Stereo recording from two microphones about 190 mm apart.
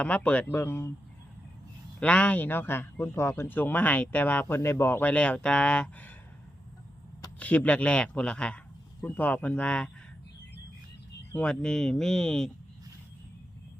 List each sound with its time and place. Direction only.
0.0 s a man's voice: 5° left (ahead or behind)
2.0 s a man's voice: 5° left (ahead or behind)
7.3 s a man's voice: 10° left (ahead or behind)
11.3 s speech: 5° left (ahead or behind)